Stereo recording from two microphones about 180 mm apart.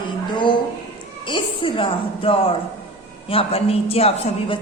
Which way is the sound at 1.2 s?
30° left (ahead or behind).